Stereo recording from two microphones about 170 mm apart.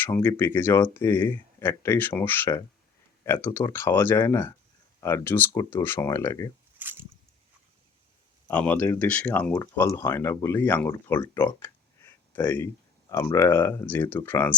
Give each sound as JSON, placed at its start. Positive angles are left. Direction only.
{"t": 0.0, "sound": "speech", "side_deg": 10}
{"t": 6.7, "sound": "a sound", "side_deg": -10}
{"t": 8.4, "sound": "speech", "side_deg": 10}